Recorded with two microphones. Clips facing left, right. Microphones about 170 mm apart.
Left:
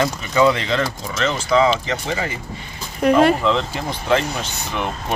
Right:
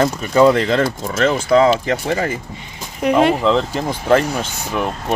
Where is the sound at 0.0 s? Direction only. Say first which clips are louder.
Right 4 dB; 45° right (ahead or behind).